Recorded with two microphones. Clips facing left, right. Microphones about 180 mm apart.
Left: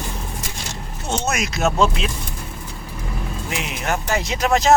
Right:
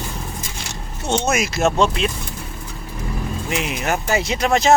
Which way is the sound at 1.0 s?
Centre (ahead or behind).